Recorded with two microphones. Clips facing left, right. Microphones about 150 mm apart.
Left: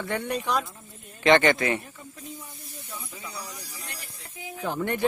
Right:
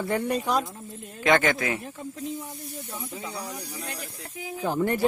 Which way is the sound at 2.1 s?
65° right (ahead or behind).